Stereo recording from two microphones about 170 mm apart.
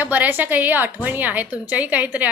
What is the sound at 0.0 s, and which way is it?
Speech, 10° right (ahead or behind).